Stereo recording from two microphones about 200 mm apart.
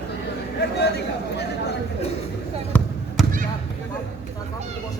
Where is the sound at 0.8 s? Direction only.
55° left (ahead or behind).